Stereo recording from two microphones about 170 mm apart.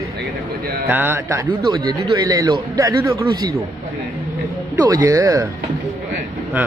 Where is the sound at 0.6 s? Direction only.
65° right (ahead or behind).